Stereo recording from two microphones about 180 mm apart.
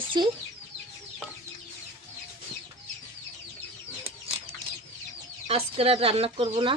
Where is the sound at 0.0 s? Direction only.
25° right (ahead or behind).